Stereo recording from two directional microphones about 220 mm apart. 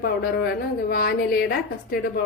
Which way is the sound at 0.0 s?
45° left (ahead or behind).